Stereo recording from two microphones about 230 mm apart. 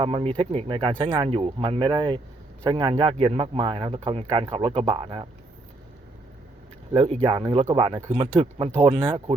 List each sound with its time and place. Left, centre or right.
0.0 s speech: right
7.3 s speech: right